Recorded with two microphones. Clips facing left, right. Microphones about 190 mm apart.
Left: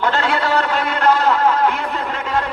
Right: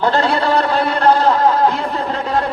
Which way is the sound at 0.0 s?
35° right (ahead or behind).